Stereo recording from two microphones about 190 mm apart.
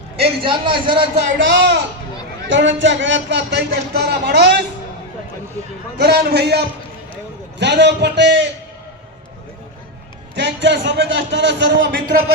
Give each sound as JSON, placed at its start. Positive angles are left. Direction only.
{"t": 0.4, "sound": "a man's voice", "side_deg": -25}
{"t": 1.1, "sound": "a man's voice", "side_deg": -60}
{"t": 6.0, "sound": "a man's voice", "side_deg": -55}
{"t": 10.3, "sound": "speech", "side_deg": -65}